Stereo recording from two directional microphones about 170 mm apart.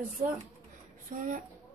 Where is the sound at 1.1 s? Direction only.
50° right (ahead or behind).